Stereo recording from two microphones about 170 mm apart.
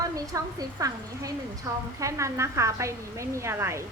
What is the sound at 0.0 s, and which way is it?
A woman's voice, 20° right (ahead or behind).